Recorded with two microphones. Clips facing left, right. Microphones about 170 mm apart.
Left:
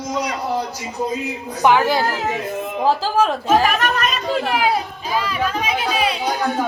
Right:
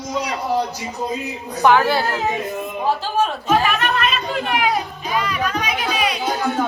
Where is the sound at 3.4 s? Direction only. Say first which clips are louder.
Left 2 dB; 40° left (ahead or behind).